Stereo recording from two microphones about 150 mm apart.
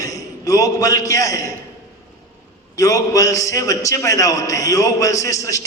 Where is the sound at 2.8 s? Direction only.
20° left (ahead or behind).